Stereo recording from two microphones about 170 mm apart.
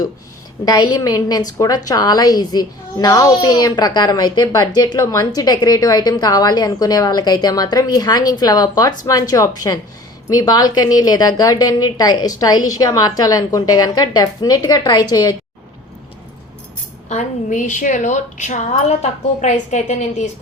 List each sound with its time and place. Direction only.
0.6 s a woman's voice: 20° left (ahead or behind)
17.1 s a woman's voice: 45° left (ahead or behind)